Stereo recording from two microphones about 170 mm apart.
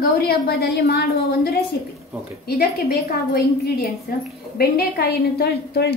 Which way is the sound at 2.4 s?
65° left (ahead or behind).